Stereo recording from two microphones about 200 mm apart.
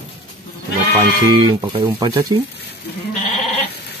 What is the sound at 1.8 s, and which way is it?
Speech, 15° right (ahead or behind).